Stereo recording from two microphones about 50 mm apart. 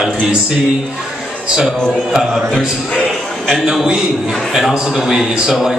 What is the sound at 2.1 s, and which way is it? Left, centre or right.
A man's voice, centre.